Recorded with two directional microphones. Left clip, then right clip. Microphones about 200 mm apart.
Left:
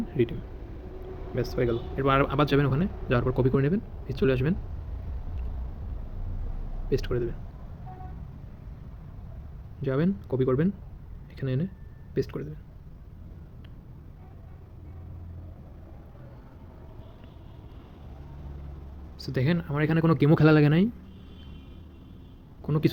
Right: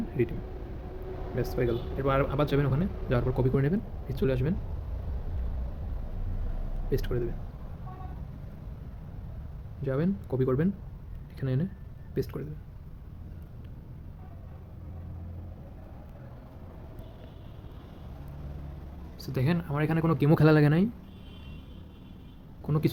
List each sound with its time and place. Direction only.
1.4 s speech: 10° left (ahead or behind)
2.0 s speech: 25° left (ahead or behind)
6.9 s speech: 10° left (ahead or behind)
9.8 s speech: 15° left (ahead or behind)
19.2 s speech: 10° left (ahead or behind)
22.6 s speech: 10° left (ahead or behind)